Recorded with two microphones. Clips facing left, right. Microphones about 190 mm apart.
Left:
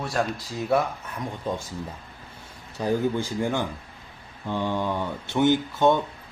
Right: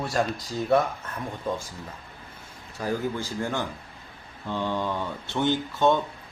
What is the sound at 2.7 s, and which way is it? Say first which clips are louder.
Speech: left 4 dB; 20° left (ahead or behind).